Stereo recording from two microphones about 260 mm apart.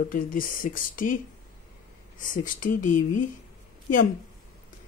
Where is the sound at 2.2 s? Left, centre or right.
Left.